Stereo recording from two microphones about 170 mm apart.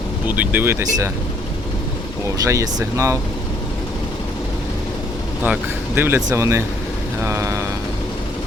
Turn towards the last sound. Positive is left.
turn(degrees=-15)  # may be behind; listen again after turning